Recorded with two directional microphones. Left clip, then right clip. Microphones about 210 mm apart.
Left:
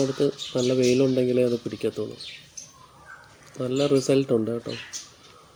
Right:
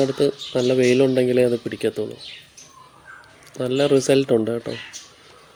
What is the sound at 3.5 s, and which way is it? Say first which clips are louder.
Speech: right 4 dB; 5° right (ahead or behind).